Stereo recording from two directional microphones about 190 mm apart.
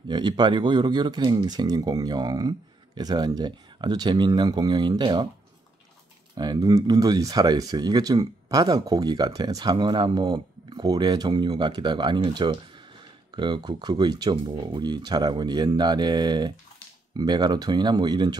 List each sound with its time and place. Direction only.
0.1 s speech: 25° right (ahead or behind)
6.3 s speech: 20° right (ahead or behind)